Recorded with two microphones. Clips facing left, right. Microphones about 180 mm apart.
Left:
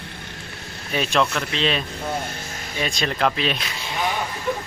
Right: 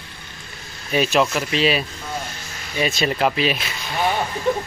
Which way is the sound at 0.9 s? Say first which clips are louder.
Right 3 dB; 5° right (ahead or behind).